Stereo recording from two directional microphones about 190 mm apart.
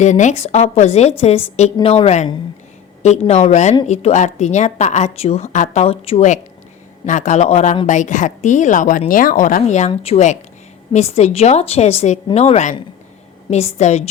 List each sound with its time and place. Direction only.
0.0 s a woman's voice: 40° left (ahead or behind)